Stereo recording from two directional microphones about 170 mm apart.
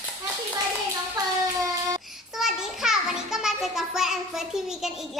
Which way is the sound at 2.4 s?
5° right (ahead or behind).